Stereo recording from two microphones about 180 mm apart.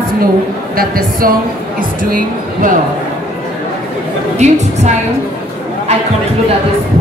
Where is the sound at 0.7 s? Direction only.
55° right (ahead or behind).